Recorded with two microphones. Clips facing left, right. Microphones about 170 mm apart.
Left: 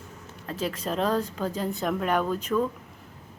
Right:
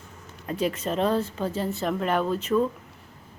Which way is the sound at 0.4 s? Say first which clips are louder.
Right 3 dB; 5° right (ahead or behind).